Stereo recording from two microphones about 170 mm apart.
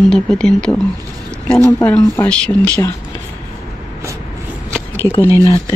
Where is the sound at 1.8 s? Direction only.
10° left (ahead or behind).